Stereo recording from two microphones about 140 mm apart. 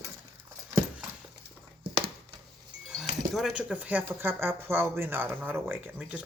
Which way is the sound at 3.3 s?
5° right (ahead or behind).